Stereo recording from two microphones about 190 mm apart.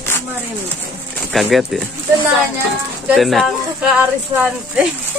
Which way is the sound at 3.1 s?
Centre (ahead or behind).